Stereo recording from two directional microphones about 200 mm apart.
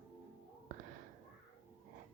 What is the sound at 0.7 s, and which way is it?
Whispering, 40° right (ahead or behind).